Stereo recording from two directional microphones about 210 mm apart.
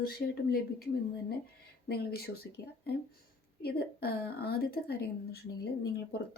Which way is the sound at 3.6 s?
50° left (ahead or behind).